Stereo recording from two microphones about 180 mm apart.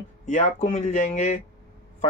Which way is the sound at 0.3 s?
45° left (ahead or behind).